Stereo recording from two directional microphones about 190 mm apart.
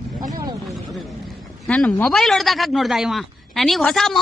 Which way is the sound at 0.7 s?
Centre (ahead or behind).